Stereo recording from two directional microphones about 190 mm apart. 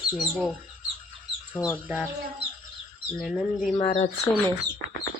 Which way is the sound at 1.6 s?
15° left (ahead or behind).